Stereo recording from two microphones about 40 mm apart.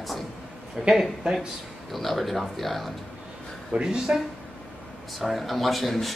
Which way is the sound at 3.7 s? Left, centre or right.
Right.